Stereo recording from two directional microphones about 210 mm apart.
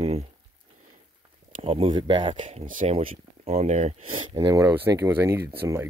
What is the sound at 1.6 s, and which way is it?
Speech, 25° right (ahead or behind).